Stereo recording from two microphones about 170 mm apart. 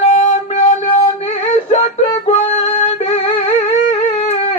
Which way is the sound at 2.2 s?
35° left (ahead or behind).